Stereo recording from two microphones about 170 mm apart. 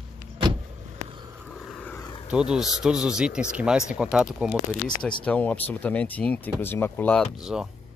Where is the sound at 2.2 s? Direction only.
5° right (ahead or behind).